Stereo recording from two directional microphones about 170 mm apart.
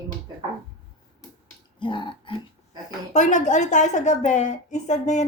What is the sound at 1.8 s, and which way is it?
Speech, 30° left (ahead or behind).